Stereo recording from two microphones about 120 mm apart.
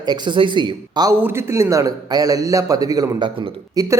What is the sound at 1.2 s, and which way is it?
A man's voice, 20° right (ahead or behind).